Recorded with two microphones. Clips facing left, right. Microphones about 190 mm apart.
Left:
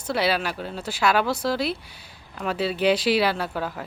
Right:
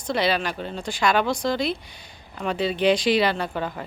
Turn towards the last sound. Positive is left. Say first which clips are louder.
# right 1 dB
turn(degrees=5)  # may be behind; listen again after turning